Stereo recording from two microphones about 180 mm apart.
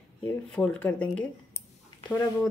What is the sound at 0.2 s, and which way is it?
A woman's voice, 5° left (ahead or behind).